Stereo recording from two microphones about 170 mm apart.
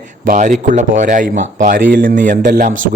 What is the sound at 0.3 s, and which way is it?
Speech, 45° right (ahead or behind).